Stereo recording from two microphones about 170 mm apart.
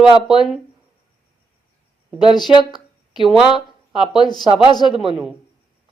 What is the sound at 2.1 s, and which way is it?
Speech, 25° left (ahead or behind).